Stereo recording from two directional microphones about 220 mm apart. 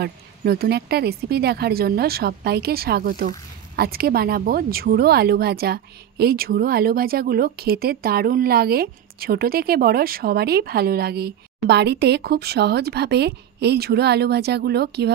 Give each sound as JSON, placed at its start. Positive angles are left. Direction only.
{"t": 0.0, "sound": "speech", "side_deg": -45}